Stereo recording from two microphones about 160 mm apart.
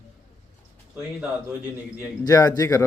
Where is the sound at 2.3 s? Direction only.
25° left (ahead or behind).